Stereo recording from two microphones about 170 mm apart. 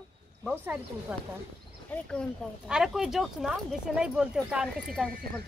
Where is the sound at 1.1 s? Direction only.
5° right (ahead or behind).